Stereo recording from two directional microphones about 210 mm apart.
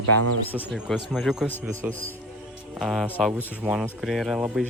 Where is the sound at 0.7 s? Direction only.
Centre (ahead or behind).